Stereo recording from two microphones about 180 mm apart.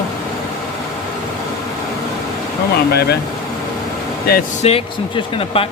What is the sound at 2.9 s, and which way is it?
Speech, 65° left (ahead or behind).